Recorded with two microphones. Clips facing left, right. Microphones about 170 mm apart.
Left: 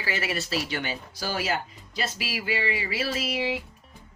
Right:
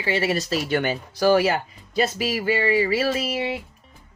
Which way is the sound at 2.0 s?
45° right (ahead or behind).